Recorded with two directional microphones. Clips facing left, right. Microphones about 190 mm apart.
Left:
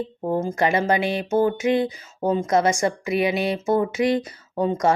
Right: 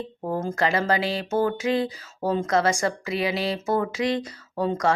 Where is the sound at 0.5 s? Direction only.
20° left (ahead or behind).